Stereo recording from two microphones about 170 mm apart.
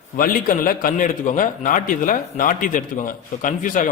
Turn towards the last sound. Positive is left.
turn(degrees=50)  # may be behind; listen again after turning